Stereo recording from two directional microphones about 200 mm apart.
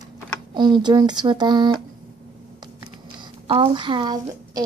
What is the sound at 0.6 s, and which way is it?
Speech, 20° right (ahead or behind).